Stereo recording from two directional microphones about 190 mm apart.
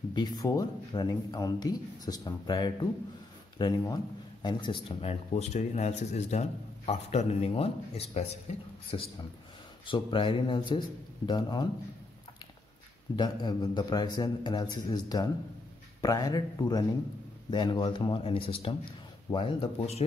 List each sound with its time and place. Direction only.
0.1 s speech: 25° left (ahead or behind)
13.1 s speech: 20° left (ahead or behind)